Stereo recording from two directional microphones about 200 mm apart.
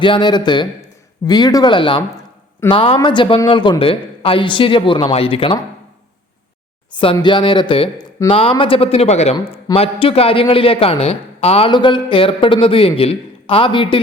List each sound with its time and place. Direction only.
0.0 s speech: 25° left (ahead or behind)
6.9 s speech: 25° left (ahead or behind)